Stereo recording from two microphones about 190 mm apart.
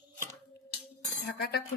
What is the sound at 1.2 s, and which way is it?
Speech, 55° left (ahead or behind).